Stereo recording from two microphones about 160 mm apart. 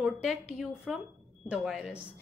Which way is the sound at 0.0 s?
5° right (ahead or behind).